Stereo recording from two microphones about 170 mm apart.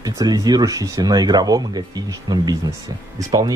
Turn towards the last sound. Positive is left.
turn(degrees=-20)  # may be behind; listen again after turning